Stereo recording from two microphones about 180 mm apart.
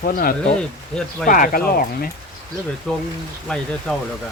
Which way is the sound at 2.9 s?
5° left (ahead or behind).